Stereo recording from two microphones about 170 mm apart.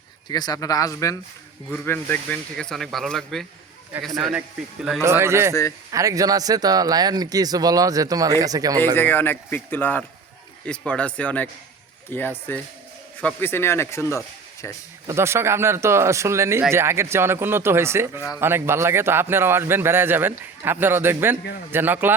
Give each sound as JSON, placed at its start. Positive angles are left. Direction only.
{"t": 0.3, "sound": "speech", "side_deg": 25}
{"t": 5.0, "sound": "speech", "side_deg": -15}
{"t": 9.0, "sound": "speech", "side_deg": 10}
{"t": 15.0, "sound": "speech", "side_deg": -15}